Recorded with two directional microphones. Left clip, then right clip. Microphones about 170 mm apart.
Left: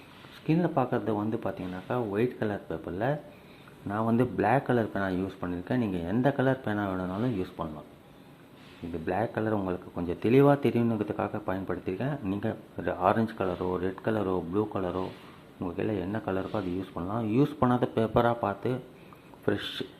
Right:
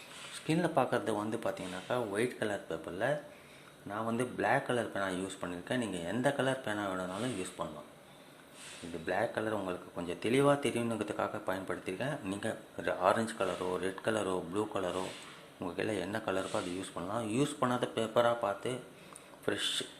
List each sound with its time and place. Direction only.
0.4 s speech: 10° left (ahead or behind)
9.0 s speech: 15° left (ahead or behind)